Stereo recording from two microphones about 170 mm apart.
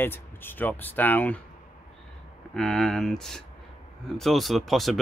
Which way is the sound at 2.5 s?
5° left (ahead or behind).